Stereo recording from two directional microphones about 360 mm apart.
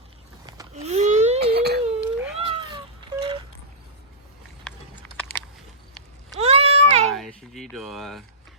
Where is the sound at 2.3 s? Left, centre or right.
Centre.